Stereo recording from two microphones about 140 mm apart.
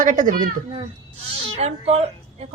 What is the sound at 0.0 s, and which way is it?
Speech, 65° right (ahead or behind).